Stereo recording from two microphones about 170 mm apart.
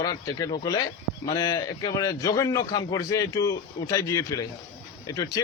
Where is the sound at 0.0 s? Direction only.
20° left (ahead or behind).